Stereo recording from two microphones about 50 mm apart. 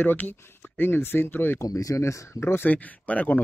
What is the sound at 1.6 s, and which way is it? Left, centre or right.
Speech, left.